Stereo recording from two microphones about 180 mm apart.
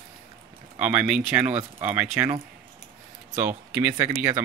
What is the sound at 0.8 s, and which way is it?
Speech, 5° right (ahead or behind).